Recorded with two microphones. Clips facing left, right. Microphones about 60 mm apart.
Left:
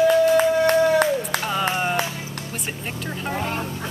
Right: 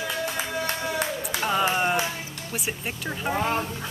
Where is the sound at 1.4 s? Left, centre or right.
Centre.